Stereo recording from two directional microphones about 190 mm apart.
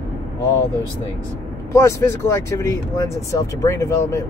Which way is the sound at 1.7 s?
15° left (ahead or behind).